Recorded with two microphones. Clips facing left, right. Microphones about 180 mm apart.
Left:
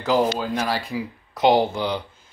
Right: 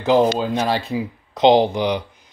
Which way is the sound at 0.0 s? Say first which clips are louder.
Right 5 dB; 25° right (ahead or behind).